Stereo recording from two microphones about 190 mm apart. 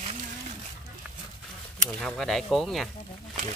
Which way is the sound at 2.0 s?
5° left (ahead or behind).